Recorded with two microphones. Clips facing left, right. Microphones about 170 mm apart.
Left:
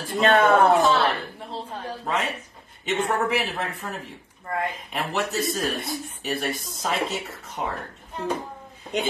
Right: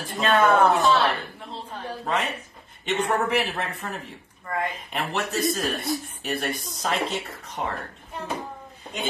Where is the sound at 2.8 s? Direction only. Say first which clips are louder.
Even; centre (ahead or behind).